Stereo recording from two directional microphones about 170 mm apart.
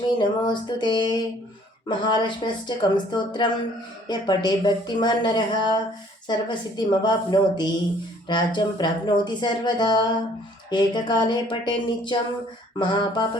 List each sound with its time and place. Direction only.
0.2 s speech: 25° left (ahead or behind)